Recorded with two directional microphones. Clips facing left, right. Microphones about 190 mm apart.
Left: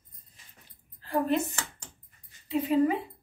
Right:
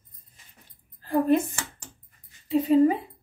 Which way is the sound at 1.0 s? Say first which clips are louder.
Right 5 dB; 50° right (ahead or behind).